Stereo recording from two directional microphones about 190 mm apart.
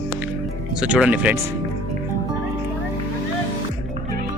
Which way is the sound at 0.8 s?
5° right (ahead or behind).